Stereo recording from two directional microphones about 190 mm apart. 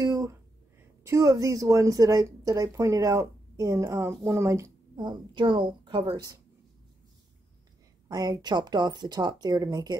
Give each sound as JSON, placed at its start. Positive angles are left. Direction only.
{"t": 0.0, "sound": "a sound", "side_deg": -20}
{"t": 1.0, "sound": "speech", "side_deg": -15}
{"t": 8.1, "sound": "speech", "side_deg": -20}